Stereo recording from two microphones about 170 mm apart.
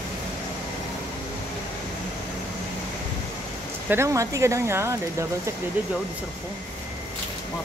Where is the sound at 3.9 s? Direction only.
15° right (ahead or behind).